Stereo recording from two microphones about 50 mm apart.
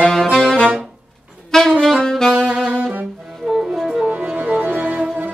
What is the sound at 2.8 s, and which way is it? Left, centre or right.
Saxophone, right.